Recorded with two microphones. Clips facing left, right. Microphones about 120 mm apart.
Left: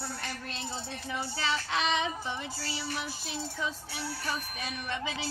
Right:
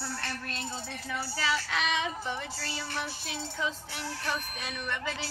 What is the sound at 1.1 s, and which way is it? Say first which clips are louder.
Child singing: right 1 dB; 20° left (ahead or behind).